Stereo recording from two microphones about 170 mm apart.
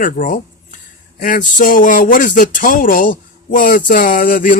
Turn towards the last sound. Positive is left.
turn(degrees=55)  # may be behind; listen again after turning